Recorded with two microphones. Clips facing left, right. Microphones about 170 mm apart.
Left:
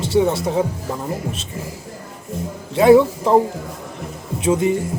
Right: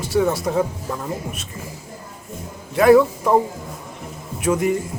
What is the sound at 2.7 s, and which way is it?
Speech, 25° left (ahead or behind).